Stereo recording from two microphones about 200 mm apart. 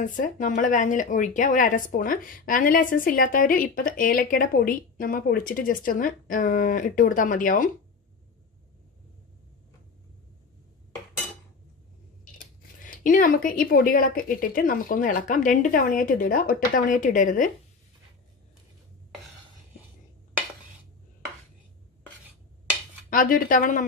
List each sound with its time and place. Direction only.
0.0 s speech: 40° left (ahead or behind)
12.8 s speech: 40° left (ahead or behind)
23.0 s speech: 45° left (ahead or behind)